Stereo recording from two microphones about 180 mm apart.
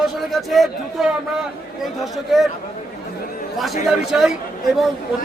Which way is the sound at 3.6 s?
Centre (ahead or behind).